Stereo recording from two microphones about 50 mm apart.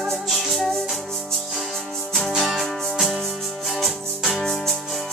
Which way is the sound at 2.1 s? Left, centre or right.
Centre.